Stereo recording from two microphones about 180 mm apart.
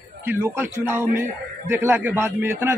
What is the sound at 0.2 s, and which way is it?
A man's voice, 10° right (ahead or behind).